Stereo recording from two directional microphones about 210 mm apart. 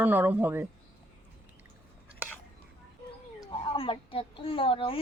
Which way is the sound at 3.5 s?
25° left (ahead or behind).